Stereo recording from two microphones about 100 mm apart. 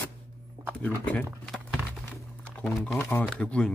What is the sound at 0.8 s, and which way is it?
Speech, 15° left (ahead or behind).